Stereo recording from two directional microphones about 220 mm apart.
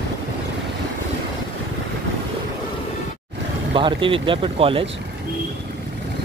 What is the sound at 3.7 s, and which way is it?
Speech, 20° right (ahead or behind).